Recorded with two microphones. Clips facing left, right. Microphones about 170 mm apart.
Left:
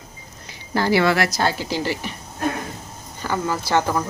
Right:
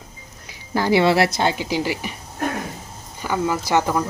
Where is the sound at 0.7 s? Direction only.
15° right (ahead or behind).